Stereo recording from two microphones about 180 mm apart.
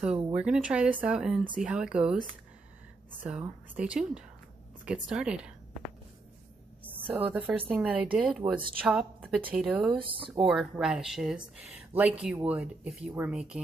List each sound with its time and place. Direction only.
0.3 s speech: 5° right (ahead or behind)
3.3 s a woman's voice: 5° right (ahead or behind)
9.9 s speech: 30° right (ahead or behind)
10.4 s speech: 5° right (ahead or behind)